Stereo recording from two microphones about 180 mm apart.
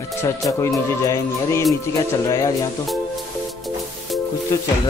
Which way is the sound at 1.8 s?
15° left (ahead or behind).